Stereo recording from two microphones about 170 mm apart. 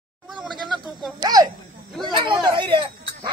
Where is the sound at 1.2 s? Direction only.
20° right (ahead or behind).